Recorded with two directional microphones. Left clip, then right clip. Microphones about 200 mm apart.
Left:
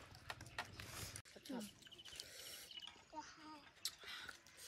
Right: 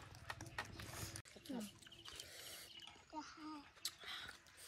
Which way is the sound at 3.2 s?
40° right (ahead or behind).